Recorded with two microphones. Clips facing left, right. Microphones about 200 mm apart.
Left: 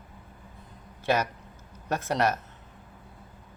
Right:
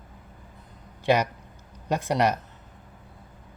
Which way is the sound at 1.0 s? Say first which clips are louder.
Right 4 dB; 15° right (ahead or behind).